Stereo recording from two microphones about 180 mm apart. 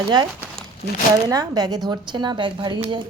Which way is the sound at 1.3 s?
20° right (ahead or behind).